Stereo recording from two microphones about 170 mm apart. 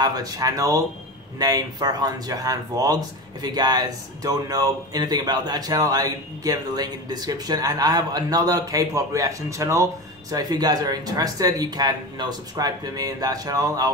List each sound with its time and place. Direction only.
0.0 s speech: 20° right (ahead or behind)